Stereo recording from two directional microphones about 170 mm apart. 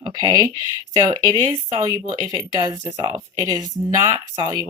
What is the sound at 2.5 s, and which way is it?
Speech, 25° right (ahead or behind).